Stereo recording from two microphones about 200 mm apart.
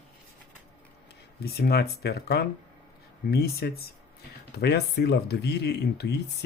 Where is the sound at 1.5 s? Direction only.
50° left (ahead or behind).